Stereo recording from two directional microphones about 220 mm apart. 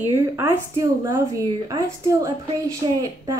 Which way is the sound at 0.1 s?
10° right (ahead or behind).